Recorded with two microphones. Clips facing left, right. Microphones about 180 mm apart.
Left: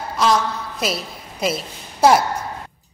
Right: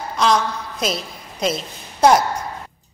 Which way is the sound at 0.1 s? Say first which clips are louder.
Even; 5° left (ahead or behind).